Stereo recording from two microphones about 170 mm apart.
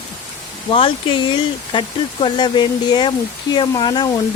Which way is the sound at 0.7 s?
30° left (ahead or behind).